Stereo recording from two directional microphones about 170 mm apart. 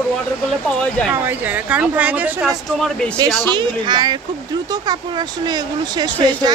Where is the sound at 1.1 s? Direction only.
10° right (ahead or behind).